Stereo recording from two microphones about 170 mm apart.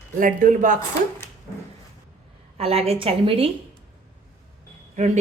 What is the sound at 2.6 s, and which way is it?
Speech, 35° right (ahead or behind).